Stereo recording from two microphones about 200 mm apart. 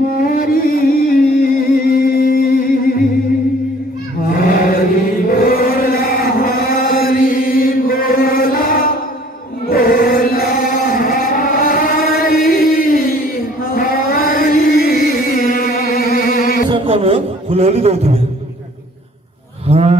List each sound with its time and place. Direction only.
0.2 s music: 45° left (ahead or behind)
4.3 s chant: 45° left (ahead or behind)
16.7 s a sound: 30° right (ahead or behind)
19.7 s cattle: 30° right (ahead or behind)